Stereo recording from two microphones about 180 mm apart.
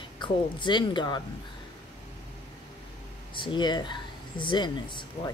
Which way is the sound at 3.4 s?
25° left (ahead or behind).